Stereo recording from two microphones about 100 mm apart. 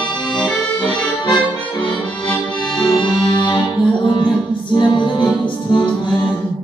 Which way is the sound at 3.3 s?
50° left (ahead or behind).